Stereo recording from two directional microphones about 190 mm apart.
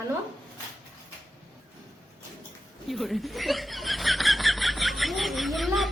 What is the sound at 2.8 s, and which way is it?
Snicker, centre (ahead or behind).